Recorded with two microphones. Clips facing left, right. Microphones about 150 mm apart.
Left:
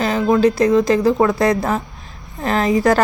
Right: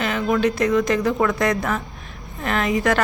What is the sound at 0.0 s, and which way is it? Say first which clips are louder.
A woman's voice: left 5 dB; 35° left (ahead or behind).